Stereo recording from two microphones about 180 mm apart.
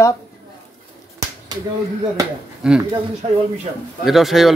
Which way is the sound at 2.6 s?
5° right (ahead or behind).